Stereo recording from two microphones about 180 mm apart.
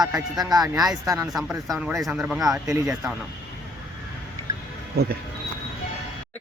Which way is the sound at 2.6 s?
15° right (ahead or behind).